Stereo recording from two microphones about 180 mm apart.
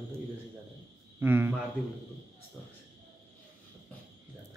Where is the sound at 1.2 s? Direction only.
10° right (ahead or behind).